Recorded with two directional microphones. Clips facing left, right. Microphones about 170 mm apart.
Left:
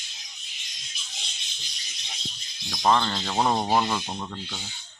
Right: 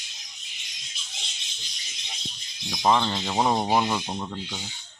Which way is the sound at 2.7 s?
10° right (ahead or behind).